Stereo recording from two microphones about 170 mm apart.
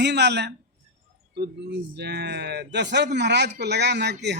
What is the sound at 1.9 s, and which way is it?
Speech, 75° right (ahead or behind).